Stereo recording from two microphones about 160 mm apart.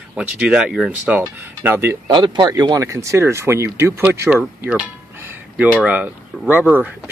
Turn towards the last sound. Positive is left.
turn(degrees=-10)  # may be behind; listen again after turning